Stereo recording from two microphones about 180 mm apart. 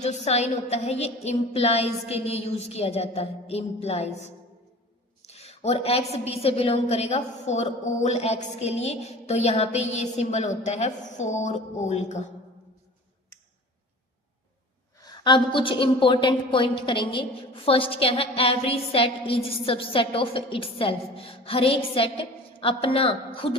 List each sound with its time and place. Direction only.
0.0 s a woman's voice: 35° left (ahead or behind)
14.9 s a woman's voice: 20° left (ahead or behind)